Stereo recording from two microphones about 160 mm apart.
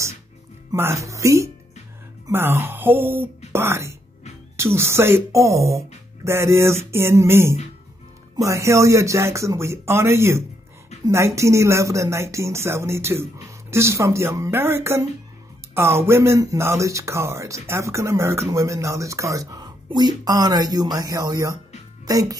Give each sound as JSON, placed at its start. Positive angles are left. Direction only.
{"t": 0.7, "sound": "speech", "side_deg": -15}